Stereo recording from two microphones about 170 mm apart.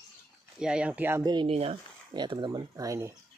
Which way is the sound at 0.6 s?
5° right (ahead or behind).